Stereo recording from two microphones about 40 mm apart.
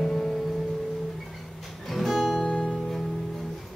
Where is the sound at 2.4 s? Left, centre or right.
Left.